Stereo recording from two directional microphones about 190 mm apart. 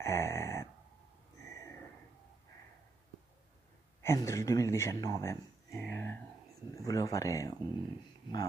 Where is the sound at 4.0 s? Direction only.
15° left (ahead or behind).